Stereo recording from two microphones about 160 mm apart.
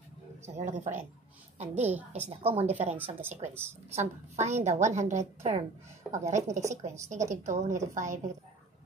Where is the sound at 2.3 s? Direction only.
40° right (ahead or behind).